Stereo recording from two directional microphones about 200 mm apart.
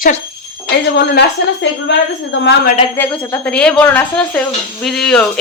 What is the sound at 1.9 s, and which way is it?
Speech, 60° left (ahead or behind).